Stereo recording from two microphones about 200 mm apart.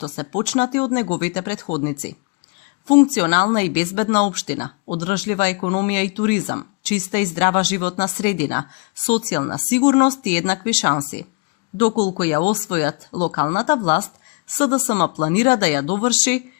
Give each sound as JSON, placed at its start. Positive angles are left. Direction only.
{"t": 0.0, "sound": "speech", "side_deg": 40}